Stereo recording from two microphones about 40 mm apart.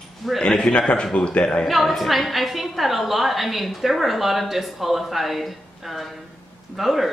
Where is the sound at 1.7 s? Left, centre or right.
Centre.